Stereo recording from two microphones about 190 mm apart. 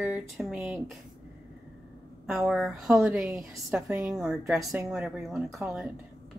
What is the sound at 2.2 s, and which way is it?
Speech, centre (ahead or behind).